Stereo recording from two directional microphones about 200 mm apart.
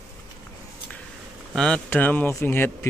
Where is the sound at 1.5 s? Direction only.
5° left (ahead or behind).